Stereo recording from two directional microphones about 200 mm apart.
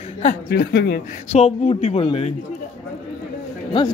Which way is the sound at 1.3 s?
30° left (ahead or behind).